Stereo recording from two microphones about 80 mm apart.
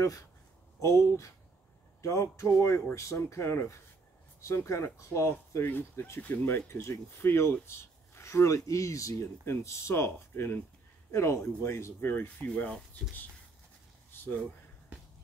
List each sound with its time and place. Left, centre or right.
0.7 s speech: left
5.7 s speech: left
14.1 s a sound: left